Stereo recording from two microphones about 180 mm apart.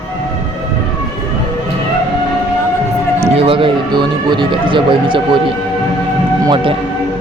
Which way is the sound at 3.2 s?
35° right (ahead or behind).